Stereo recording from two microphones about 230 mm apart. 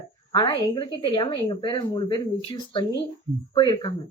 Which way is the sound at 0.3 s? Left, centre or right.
Centre.